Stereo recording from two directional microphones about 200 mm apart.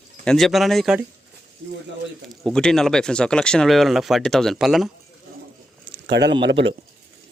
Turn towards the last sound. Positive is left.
turn(degrees=-65)  # may be behind; listen again after turning